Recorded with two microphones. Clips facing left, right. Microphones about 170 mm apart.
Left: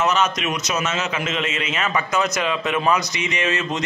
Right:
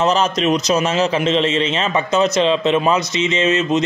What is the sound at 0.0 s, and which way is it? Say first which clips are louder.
A man's voice: right 4 dB; 30° right (ahead or behind).